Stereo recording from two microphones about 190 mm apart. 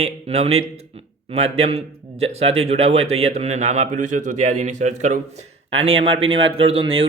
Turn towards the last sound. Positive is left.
turn(degrees=-30)  # may be behind; listen again after turning